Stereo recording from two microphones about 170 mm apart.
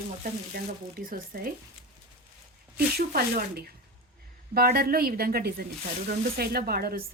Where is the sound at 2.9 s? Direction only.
65° right (ahead or behind).